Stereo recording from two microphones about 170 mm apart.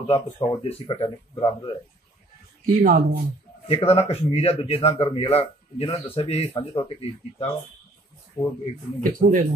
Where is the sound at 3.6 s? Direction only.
35° left (ahead or behind).